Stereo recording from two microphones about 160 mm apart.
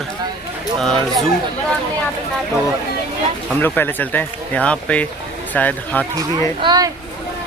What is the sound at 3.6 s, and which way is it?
Speech, 10° left (ahead or behind).